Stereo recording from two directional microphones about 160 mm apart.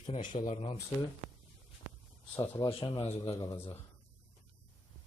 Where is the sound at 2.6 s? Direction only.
35° left (ahead or behind).